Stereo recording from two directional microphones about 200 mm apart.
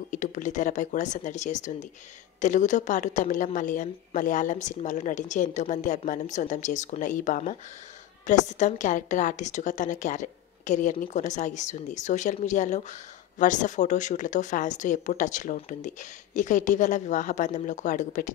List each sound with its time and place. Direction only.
0.1 s a woman's voice: 40° left (ahead or behind)